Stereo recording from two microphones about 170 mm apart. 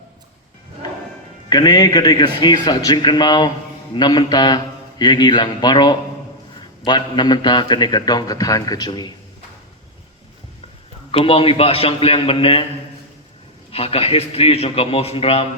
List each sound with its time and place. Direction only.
1.5 s a man's voice: 25° left (ahead or behind)
11.1 s a man's voice: 35° left (ahead or behind)
13.7 s a man's voice: 35° left (ahead or behind)